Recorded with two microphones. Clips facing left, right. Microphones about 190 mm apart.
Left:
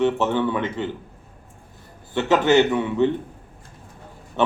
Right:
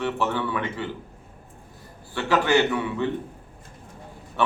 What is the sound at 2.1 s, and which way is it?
Speech, 20° left (ahead or behind).